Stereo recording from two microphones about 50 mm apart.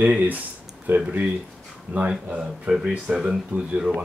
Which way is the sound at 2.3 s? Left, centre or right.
Centre.